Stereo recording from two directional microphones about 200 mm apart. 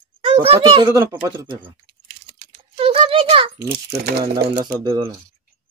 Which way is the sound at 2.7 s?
25° right (ahead or behind).